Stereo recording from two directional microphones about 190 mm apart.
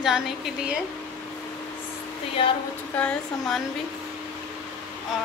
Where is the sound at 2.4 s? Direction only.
30° left (ahead or behind).